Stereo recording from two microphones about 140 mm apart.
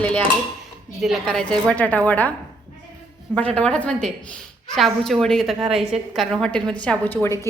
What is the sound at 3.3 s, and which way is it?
A woman's voice, 10° left (ahead or behind).